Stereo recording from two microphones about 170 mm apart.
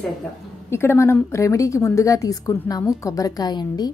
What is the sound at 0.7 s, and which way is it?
A woman's voice, 15° left (ahead or behind).